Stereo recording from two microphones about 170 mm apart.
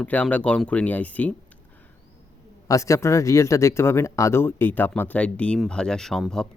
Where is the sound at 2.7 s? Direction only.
15° left (ahead or behind).